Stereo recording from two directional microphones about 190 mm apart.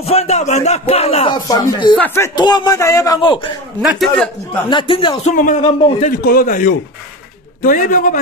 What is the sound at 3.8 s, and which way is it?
Speech, centre (ahead or behind).